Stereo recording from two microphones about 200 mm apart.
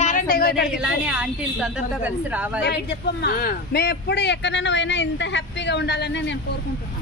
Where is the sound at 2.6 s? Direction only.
55° left (ahead or behind).